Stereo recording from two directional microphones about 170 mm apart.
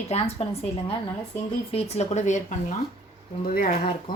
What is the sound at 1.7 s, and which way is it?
Speech, 40° left (ahead or behind).